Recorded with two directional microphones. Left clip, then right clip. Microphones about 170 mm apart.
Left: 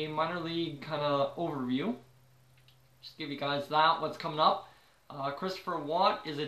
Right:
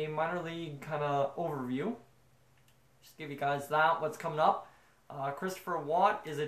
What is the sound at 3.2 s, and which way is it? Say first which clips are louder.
Speech: even; 5° right (ahead or behind).